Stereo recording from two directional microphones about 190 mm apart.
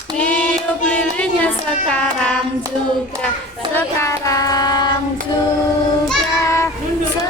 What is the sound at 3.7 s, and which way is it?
Child singing, 15° left (ahead or behind).